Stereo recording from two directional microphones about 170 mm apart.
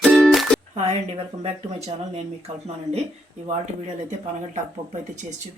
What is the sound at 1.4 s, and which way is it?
Speech, 35° right (ahead or behind).